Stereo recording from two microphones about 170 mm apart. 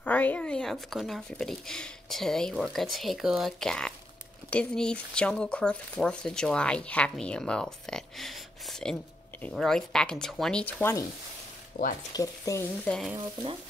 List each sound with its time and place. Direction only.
0.0 s speech: 10° left (ahead or behind)
11.7 s speech: 50° left (ahead or behind)
12.1 s speech: 20° left (ahead or behind)